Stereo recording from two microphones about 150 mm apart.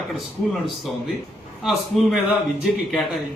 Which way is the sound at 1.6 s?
Centre (ahead or behind).